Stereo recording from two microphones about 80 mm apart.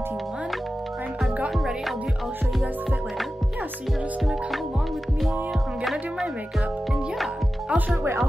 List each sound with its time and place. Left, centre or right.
7.7 s music: centre